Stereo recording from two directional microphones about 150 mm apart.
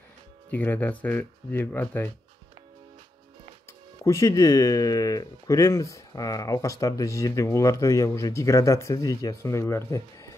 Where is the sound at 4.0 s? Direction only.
20° left (ahead or behind).